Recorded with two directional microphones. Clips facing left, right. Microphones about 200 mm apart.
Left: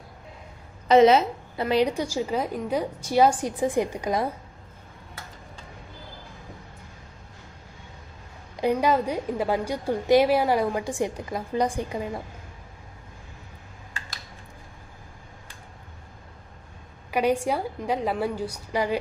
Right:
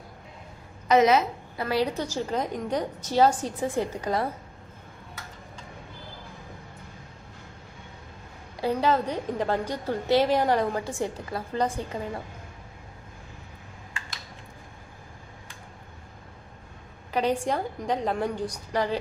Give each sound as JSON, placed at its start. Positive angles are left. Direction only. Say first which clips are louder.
{"t": 0.9, "sound": "a woman's voice", "louder": "left 4 dB", "side_deg": 30}
{"t": 8.6, "sound": "a woman's voice", "louder": "left 2 dB", "side_deg": 10}
{"t": 17.1, "sound": "a woman's voice", "louder": "left 2 dB", "side_deg": 10}